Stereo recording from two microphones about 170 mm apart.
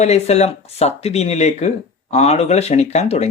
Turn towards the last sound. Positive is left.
turn(degrees=40)  # may be behind; listen again after turning